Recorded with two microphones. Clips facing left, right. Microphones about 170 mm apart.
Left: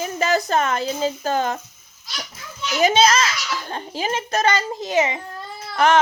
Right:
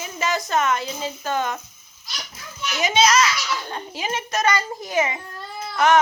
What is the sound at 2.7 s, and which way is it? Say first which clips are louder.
A child's voice: left 3 dB; 30° left (ahead or behind).